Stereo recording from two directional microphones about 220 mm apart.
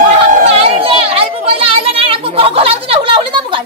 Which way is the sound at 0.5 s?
25° right (ahead or behind).